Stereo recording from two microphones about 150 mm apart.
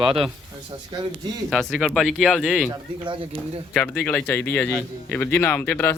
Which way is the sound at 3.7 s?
5° left (ahead or behind).